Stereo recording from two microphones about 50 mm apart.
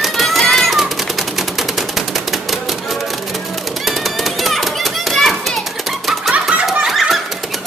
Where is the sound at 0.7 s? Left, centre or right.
Centre.